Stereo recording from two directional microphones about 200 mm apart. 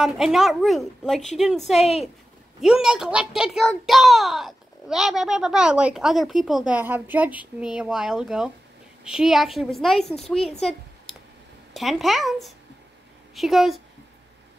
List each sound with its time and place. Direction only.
0.0 s a child's voice: centre (ahead or behind)
1.8 s a woman's voice: 30° left (ahead or behind)
2.6 s a child's voice: 5° right (ahead or behind)
10.6 s a sound: centre (ahead or behind)
11.7 s a child's voice: centre (ahead or behind)